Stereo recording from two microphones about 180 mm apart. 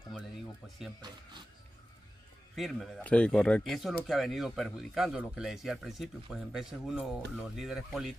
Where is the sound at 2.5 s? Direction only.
Centre (ahead or behind).